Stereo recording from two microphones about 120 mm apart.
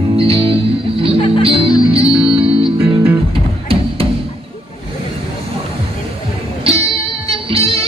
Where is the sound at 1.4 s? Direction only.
50° right (ahead or behind).